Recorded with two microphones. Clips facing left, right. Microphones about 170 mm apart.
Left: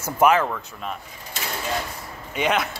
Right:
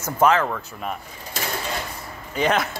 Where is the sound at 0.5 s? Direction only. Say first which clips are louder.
Right 2 dB; 5° right (ahead or behind).